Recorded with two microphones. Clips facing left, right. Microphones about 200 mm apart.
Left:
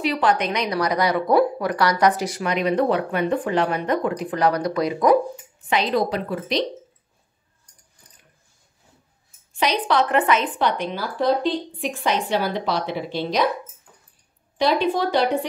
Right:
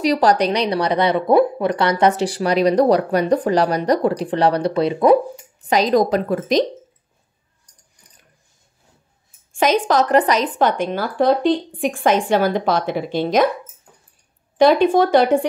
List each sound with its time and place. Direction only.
0.0 s speech: 40° right (ahead or behind)
5.7 s a woman's voice: 40° right (ahead or behind)
9.5 s a woman's voice: 45° right (ahead or behind)
14.6 s a woman's voice: 50° right (ahead or behind)